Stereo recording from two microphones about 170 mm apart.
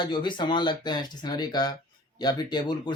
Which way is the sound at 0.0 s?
25° left (ahead or behind).